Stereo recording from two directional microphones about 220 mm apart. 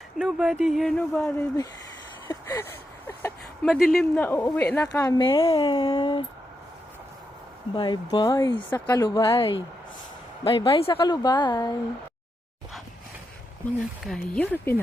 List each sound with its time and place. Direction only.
0.2 s speech: centre (ahead or behind)
2.2 s speech: 15° left (ahead or behind)
7.7 s speech: 20° left (ahead or behind)
13.7 s speech: 5° left (ahead or behind)